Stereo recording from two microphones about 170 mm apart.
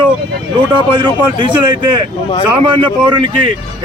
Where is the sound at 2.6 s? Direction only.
30° right (ahead or behind).